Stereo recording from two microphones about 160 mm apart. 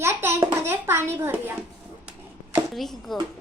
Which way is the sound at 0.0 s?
15° right (ahead or behind).